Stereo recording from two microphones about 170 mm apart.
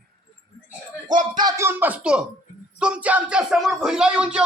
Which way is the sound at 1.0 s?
50° right (ahead or behind).